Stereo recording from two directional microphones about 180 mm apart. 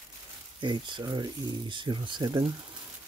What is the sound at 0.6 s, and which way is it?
Speech, 25° right (ahead or behind).